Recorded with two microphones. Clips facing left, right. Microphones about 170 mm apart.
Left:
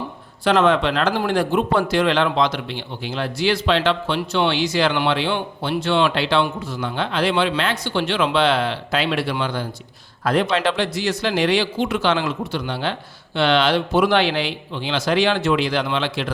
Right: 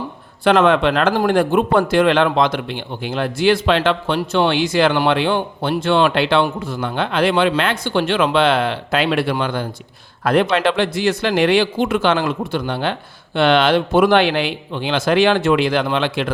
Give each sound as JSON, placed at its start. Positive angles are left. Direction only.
{"t": 0.4, "sound": "a man's voice", "side_deg": -60}